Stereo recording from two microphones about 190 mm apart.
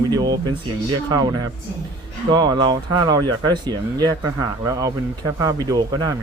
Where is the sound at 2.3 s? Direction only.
20° right (ahead or behind).